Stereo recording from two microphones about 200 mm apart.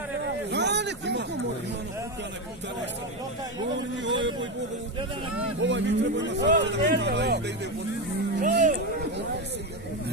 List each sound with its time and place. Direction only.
0.5 s a sound: 60° right (ahead or behind)
4.0 s speech: 65° right (ahead or behind)
5.6 s speech: 65° right (ahead or behind)
8.4 s speech: 40° right (ahead or behind)